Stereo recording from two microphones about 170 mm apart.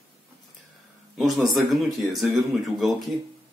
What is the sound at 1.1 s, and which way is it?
Speech, centre (ahead or behind).